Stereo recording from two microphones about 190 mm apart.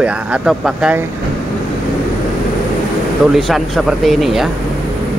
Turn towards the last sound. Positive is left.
turn(degrees=0)  # may be behind; listen again after turning